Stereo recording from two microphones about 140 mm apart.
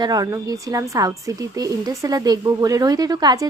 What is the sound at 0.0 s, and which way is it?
Speech, 30° right (ahead or behind).